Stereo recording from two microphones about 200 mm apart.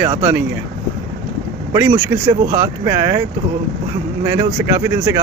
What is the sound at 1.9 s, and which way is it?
Speech, 25° right (ahead or behind).